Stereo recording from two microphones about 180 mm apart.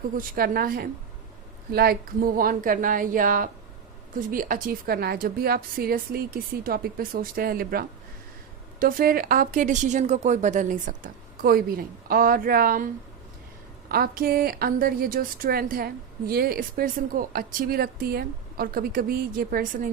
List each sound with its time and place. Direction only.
0.1 s a woman's voice: 50° right (ahead or behind)
13.9 s a woman's voice: 55° right (ahead or behind)